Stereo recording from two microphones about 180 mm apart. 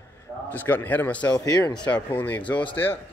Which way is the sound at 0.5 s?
10° left (ahead or behind).